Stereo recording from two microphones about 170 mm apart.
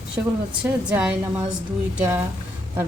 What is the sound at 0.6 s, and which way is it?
Speech, 5° right (ahead or behind).